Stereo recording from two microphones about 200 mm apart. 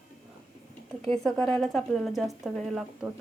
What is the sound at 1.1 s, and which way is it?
Speech, 5° left (ahead or behind).